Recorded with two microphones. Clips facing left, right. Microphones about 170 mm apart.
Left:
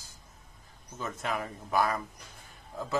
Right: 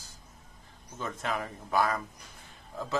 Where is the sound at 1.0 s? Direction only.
5° left (ahead or behind).